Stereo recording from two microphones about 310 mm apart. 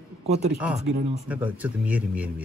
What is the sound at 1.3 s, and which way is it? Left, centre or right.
Speech, centre.